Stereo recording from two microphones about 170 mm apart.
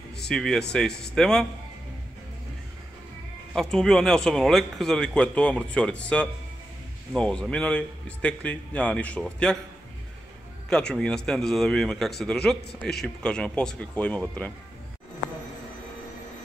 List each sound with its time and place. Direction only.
0.2 s a man's voice: 5° left (ahead or behind)
3.5 s a man's voice: 5° left (ahead or behind)
10.7 s a man's voice: 5° left (ahead or behind)